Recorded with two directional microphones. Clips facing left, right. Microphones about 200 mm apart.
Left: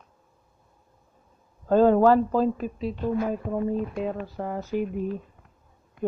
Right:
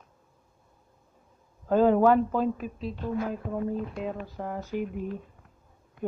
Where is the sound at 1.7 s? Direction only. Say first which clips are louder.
Left 3 dB; 10° right (ahead or behind).